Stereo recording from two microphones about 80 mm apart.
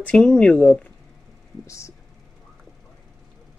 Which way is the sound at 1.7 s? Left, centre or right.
Left.